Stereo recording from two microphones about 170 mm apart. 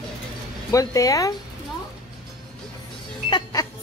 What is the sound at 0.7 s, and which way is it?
Speech, 20° left (ahead or behind).